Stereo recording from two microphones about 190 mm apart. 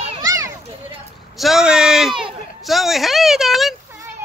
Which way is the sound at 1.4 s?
Centre (ahead or behind).